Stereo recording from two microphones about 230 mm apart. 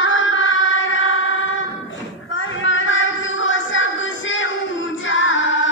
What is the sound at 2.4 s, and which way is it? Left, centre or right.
Music, left.